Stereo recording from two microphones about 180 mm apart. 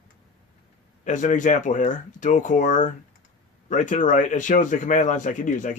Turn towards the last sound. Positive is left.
turn(degrees=45)  # may be behind; listen again after turning